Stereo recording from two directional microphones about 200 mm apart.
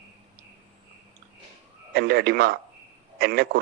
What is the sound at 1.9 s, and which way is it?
Speech, 55° right (ahead or behind).